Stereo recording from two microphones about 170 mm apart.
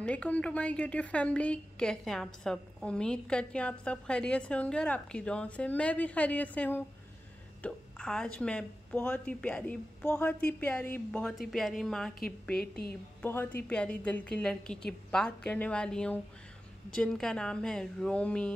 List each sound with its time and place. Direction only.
0.0 s a woman's voice: 5° left (ahead or behind)